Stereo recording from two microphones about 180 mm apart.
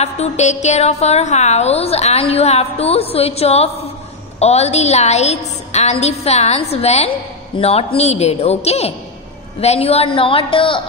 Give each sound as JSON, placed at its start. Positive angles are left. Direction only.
{"t": 0.0, "sound": "a woman's voice", "side_deg": 40}